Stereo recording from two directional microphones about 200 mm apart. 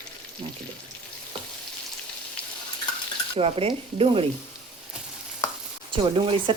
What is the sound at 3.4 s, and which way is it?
Speech, 30° right (ahead or behind).